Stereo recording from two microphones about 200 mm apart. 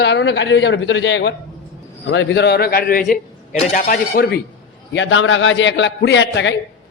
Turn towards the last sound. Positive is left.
turn(degrees=65)  # may be behind; listen again after turning